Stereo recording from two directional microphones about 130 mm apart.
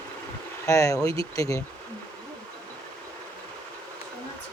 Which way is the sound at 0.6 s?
25° left (ahead or behind).